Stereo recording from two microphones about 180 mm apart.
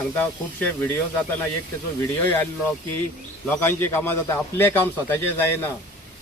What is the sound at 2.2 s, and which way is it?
A man's voice, 10° left (ahead or behind).